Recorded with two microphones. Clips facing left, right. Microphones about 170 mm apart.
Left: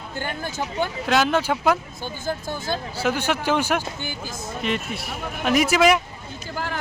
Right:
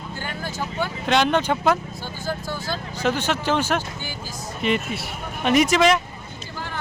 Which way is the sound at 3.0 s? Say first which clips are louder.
Right 1 dB; 10° left (ahead or behind).